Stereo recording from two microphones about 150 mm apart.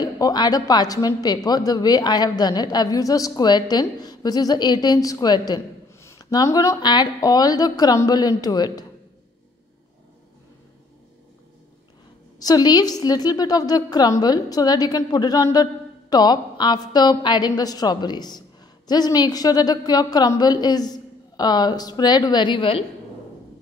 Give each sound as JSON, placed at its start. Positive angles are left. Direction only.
{"t": 0.0, "sound": "a woman's voice", "side_deg": 25}
{"t": 12.4, "sound": "a woman's voice", "side_deg": 25}